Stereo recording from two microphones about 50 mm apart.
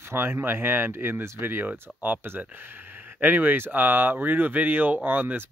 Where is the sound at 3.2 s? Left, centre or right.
Right.